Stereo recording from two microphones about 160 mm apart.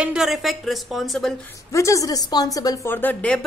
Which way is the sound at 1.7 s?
20° left (ahead or behind).